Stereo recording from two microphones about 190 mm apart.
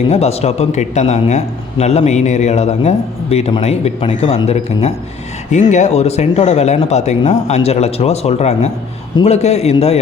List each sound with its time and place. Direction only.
0.1 s speech: 35° left (ahead or behind)